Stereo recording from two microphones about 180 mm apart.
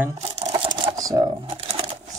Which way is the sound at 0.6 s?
20° right (ahead or behind).